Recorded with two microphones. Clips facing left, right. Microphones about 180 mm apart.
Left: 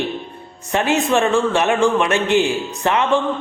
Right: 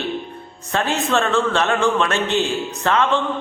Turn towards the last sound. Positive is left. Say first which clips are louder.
# left 1 dB
turn(degrees=15)  # may be behind; listen again after turning